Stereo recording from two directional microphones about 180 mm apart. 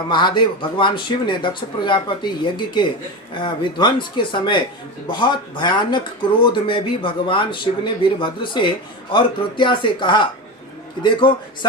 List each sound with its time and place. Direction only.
0.1 s speech: 25° left (ahead or behind)